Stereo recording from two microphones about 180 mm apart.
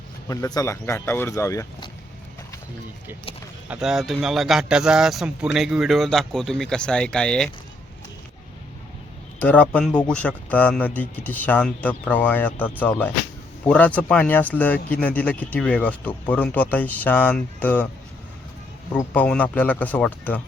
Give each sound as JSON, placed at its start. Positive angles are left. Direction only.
{"t": 0.3, "sound": "speech", "side_deg": 20}
{"t": 3.7, "sound": "speech", "side_deg": -5}
{"t": 9.4, "sound": "speech", "side_deg": 10}
{"t": 18.9, "sound": "speech", "side_deg": 10}